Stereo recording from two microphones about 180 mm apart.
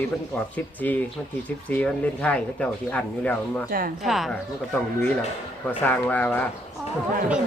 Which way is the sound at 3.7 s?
55° right (ahead or behind).